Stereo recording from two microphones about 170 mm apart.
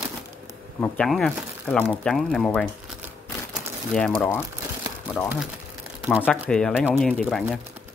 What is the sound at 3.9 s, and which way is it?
Speech, 5° left (ahead or behind).